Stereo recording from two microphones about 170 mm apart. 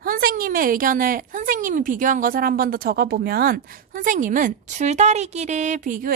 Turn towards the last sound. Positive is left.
turn(degrees=-50)  # may be behind; listen again after turning